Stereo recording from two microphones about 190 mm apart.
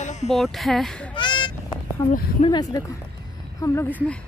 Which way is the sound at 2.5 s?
20° left (ahead or behind).